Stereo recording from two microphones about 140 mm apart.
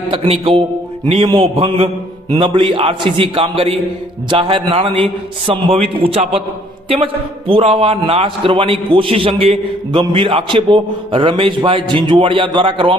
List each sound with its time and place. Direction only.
0.1 s a man's voice: 40° right (ahead or behind)